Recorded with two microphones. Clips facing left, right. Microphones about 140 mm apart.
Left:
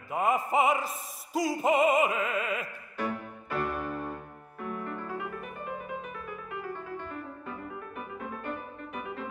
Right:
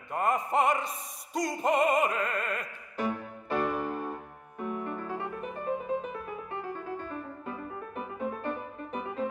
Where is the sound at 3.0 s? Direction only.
20° right (ahead or behind).